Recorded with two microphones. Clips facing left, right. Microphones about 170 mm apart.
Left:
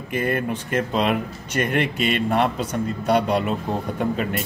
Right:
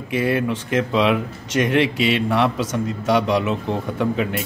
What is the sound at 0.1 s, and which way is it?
A man's voice, 80° right.